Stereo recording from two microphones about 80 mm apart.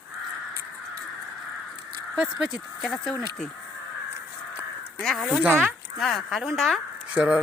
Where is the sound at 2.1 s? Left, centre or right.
Centre.